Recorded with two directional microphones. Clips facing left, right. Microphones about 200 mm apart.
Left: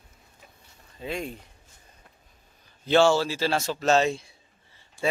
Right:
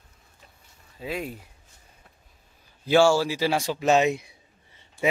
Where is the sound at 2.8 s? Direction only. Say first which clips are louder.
Right 1 dB; 10° right (ahead or behind).